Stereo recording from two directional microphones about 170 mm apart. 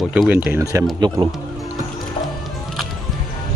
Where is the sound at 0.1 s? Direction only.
10° right (ahead or behind).